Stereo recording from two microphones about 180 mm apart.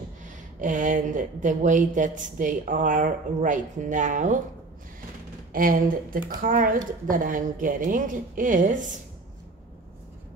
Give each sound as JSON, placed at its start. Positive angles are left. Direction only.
{"t": 0.2, "sound": "speech", "side_deg": -45}
{"t": 5.5, "sound": "speech", "side_deg": -50}